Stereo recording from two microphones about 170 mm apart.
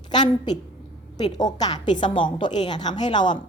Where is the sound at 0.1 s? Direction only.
25° left (ahead or behind).